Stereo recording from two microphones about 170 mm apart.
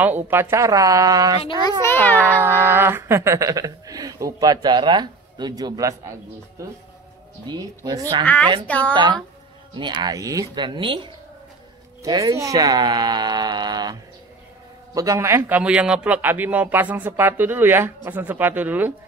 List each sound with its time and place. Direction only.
0.0 s speech: 10° right (ahead or behind)
1.4 s a child's voice: 25° left (ahead or behind)
2.4 s speech: 15° right (ahead or behind)
7.4 s speech: 25° right (ahead or behind)
8.6 s speech: 10° left (ahead or behind)
8.9 s speech: 25° right (ahead or behind)
15.0 s a man's voice: 20° right (ahead or behind)